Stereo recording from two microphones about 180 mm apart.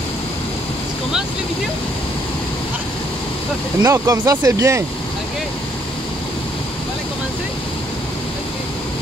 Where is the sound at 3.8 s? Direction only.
20° right (ahead or behind).